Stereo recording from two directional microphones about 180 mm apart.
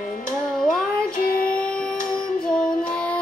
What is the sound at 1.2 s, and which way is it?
Music, 55° left (ahead or behind).